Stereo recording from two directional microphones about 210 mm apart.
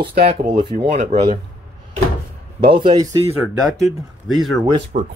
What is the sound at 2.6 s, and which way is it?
Speech, 25° right (ahead or behind).